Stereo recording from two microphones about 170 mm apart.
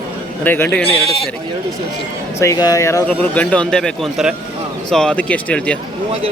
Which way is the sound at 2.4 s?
20° left (ahead or behind).